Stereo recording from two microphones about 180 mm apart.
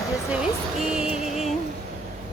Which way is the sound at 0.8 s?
5° right (ahead or behind).